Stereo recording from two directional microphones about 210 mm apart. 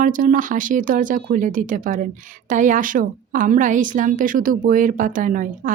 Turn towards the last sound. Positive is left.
turn(degrees=-40)  # may be behind; listen again after turning